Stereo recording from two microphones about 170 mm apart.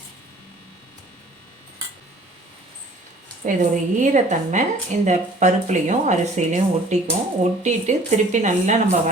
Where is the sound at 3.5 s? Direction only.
45° right (ahead or behind).